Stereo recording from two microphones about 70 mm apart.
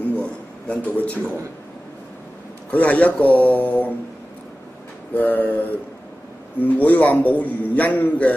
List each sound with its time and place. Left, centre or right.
0.0 s a sound: centre
2.7 s a man's voice: left
5.1 s a man's voice: left